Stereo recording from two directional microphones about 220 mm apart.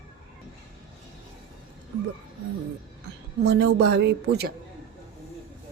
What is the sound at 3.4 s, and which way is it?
Speech, 50° right (ahead or behind).